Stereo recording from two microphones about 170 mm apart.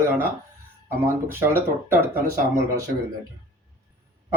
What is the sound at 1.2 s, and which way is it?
Speech, 15° right (ahead or behind).